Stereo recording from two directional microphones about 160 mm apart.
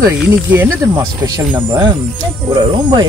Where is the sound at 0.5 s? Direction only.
15° right (ahead or behind).